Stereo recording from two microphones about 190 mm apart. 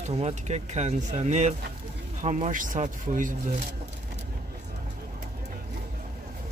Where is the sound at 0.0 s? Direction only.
35° right (ahead or behind).